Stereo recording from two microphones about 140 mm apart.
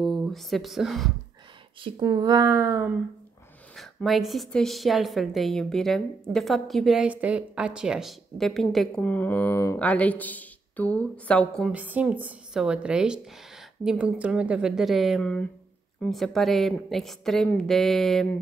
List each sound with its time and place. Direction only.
0.0 s speech: centre (ahead or behind)
1.8 s speech: 35° right (ahead or behind); by 2.9 s 20° right (ahead or behind)
3.7 s a woman's voice: centre (ahead or behind)
11.7 s a woman's voice: 10° right (ahead or behind)